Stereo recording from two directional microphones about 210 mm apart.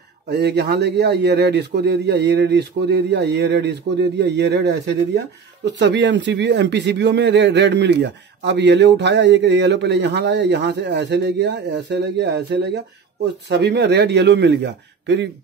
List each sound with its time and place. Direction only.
0.3 s a man's voice: 50° right (ahead or behind)